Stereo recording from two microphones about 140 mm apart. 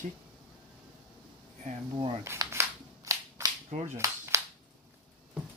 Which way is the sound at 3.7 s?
55° right (ahead or behind).